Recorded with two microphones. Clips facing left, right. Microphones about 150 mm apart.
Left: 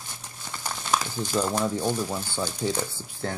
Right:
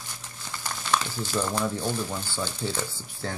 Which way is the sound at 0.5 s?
15° left (ahead or behind).